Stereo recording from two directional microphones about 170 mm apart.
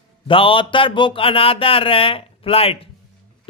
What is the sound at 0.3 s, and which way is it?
A man's voice, 30° left (ahead or behind).